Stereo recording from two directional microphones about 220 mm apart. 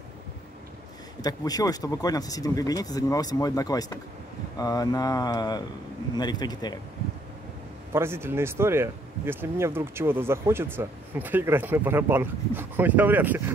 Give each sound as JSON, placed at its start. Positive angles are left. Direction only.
{"t": 1.2, "sound": "speech", "side_deg": 15}
{"t": 7.9, "sound": "speech", "side_deg": -10}